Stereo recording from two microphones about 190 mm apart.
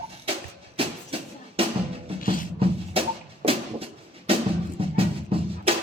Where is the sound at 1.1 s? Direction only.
30° right (ahead or behind).